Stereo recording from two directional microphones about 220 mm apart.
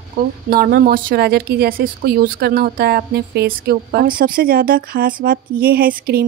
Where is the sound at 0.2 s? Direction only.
40° right (ahead or behind).